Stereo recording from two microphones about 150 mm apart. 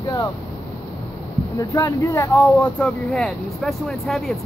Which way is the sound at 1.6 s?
25° left (ahead or behind).